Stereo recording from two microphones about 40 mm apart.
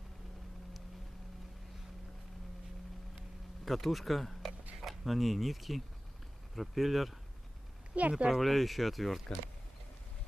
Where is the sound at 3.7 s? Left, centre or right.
Centre.